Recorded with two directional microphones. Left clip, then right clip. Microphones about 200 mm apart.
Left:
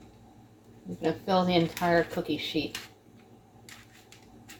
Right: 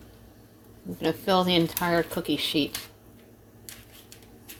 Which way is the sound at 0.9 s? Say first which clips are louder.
Right 3 dB; 60° right (ahead or behind).